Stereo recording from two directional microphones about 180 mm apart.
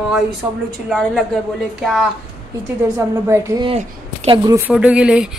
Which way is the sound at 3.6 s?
30° right (ahead or behind).